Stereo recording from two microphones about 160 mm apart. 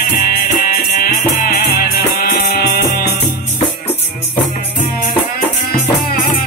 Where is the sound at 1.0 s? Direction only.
65° left (ahead or behind).